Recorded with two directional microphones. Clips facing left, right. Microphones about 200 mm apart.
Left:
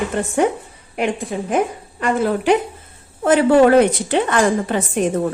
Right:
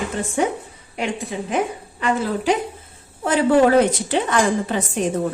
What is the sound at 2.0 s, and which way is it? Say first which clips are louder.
A woman's voice: left 3 dB; 55° left (ahead or behind).